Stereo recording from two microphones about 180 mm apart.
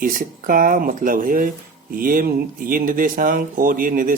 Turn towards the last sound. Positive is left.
turn(degrees=-50)  # may be behind; listen again after turning